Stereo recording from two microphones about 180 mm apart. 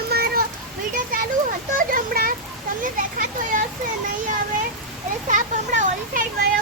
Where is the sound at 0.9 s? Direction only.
50° right (ahead or behind).